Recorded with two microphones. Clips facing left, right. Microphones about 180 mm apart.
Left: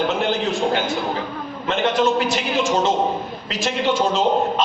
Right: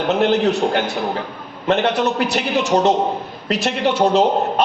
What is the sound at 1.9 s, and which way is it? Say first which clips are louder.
Speech: even; 65° right (ahead or behind).